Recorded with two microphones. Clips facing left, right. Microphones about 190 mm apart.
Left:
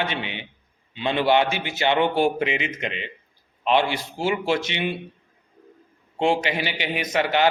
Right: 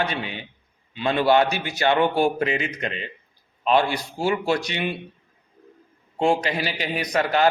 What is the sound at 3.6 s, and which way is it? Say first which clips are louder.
Speech: right 1 dB; 40° right (ahead or behind).